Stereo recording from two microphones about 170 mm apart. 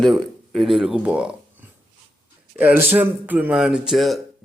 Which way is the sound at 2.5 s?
10° right (ahead or behind).